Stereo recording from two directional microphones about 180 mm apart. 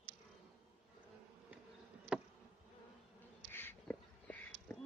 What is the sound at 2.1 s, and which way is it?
Insect, 5° right (ahead or behind).